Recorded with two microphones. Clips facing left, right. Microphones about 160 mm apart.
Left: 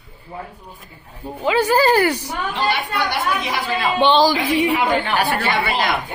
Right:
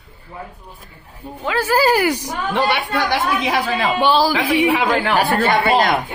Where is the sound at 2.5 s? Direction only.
80° right.